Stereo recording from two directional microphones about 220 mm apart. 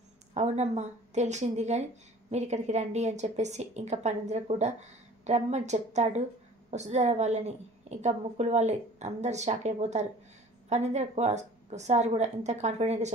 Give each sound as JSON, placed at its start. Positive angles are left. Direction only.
{"t": 0.3, "sound": "a woman's voice", "side_deg": -30}